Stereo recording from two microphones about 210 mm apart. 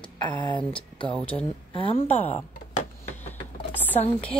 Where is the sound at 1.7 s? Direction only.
25° left (ahead or behind).